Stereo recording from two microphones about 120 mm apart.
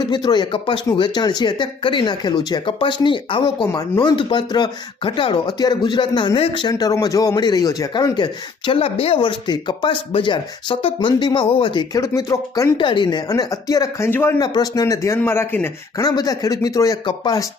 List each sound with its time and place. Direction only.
0.1 s speech: 40° left (ahead or behind)
3.7 s speech: 35° left (ahead or behind)
11.9 s speech: 30° left (ahead or behind)
12.7 s speech: 40° left (ahead or behind)
14.1 s speech: 15° left (ahead or behind)
14.3 s speech: 35° left (ahead or behind)
16.0 s speech: 30° left (ahead or behind)